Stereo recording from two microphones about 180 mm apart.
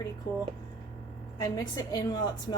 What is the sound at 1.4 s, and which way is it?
Speech, 20° left (ahead or behind).